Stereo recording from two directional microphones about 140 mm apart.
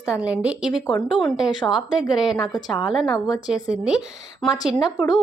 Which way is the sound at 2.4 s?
30° left (ahead or behind).